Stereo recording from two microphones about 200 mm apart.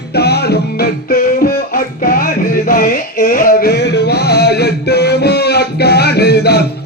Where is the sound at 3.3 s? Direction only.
50° left (ahead or behind).